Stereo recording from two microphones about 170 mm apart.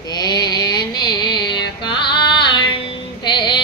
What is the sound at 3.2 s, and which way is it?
Mantra, 25° left (ahead or behind).